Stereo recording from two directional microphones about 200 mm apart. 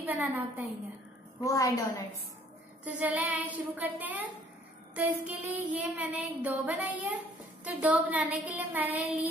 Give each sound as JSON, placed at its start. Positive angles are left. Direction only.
{"t": 0.0, "sound": "a woman's voice", "side_deg": -10}
{"t": 1.4, "sound": "a woman's voice", "side_deg": 15}
{"t": 2.8, "sound": "a sound", "side_deg": -5}